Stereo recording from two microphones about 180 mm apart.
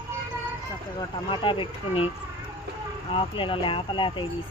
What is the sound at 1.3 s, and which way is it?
Speech, 25° left (ahead or behind).